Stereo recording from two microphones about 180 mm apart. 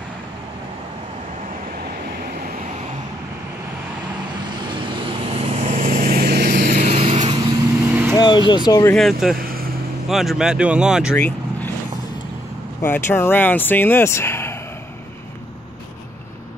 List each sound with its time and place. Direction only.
4.6 s vehicle: 30° right (ahead or behind); by 6.5 s 65° right (ahead or behind)
6.7 s vehicle: 35° right (ahead or behind)
7.8 s vehicle: 10° right (ahead or behind)
8.2 s speech: 25° left (ahead or behind)
8.9 s speech: centre (ahead or behind)
11.1 s vehicle: 10° left (ahead or behind)
12.8 s speech: 10° left (ahead or behind)